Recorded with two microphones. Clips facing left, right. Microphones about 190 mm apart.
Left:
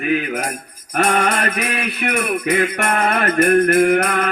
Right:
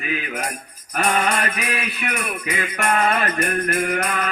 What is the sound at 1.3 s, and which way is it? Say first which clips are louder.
Music: left 3 dB; 55° left (ahead or behind).